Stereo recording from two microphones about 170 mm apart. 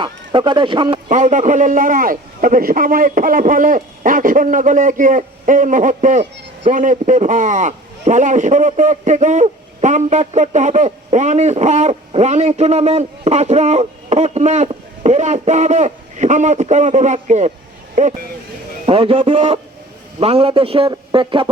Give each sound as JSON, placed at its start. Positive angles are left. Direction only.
{"t": 0.0, "sound": "speech", "side_deg": -30}
{"t": 1.1, "sound": "speech", "side_deg": -45}
{"t": 18.9, "sound": "a man's voice", "side_deg": -30}